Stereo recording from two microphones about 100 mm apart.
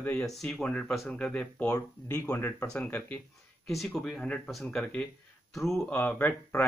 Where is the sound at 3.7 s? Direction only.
Centre (ahead or behind).